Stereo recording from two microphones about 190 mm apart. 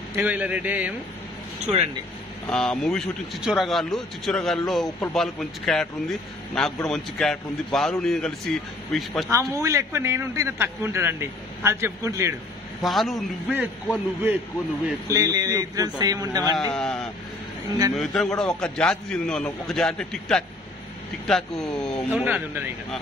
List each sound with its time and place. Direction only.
0.1 s a man's voice: 10° right (ahead or behind)
2.4 s speech: 5° left (ahead or behind)
9.3 s a man's voice: 15° right (ahead or behind)
12.8 s a man's voice: centre (ahead or behind); by 16.5 s 20° right (ahead or behind)
16.7 s speech: 5° left (ahead or behind)
22.1 s a man's voice: 10° right (ahead or behind)